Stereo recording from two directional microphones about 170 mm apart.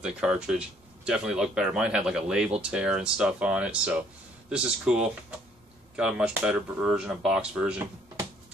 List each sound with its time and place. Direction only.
0.0 s speech: 5° right (ahead or behind)